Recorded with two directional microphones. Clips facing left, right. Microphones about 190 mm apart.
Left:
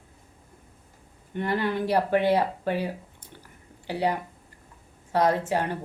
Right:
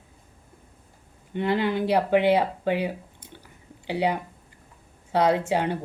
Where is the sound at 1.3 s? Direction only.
20° right (ahead or behind).